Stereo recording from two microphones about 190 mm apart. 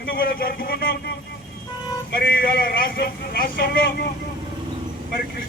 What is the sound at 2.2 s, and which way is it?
A man's voice, 55° left (ahead or behind).